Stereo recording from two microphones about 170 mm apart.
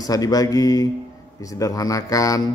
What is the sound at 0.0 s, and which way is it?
Speech, 20° left (ahead or behind).